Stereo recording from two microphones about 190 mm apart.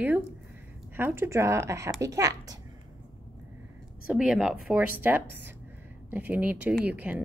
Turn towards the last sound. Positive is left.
turn(degrees=-10)  # may be behind; listen again after turning